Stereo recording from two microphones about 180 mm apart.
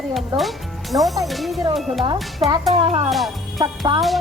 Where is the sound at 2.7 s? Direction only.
30° right (ahead or behind).